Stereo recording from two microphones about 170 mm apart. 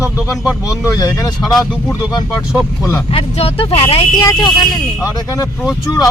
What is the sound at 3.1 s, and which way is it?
Speech, 35° left (ahead or behind).